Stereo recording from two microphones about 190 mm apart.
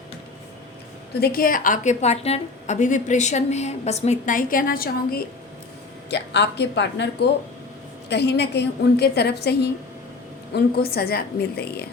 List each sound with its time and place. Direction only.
1.2 s a woman's voice: 50° left (ahead or behind)
6.1 s a woman's voice: 60° left (ahead or behind)